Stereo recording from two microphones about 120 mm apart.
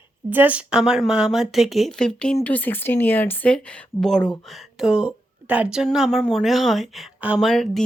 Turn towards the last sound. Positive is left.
turn(degrees=5)  # may be behind; listen again after turning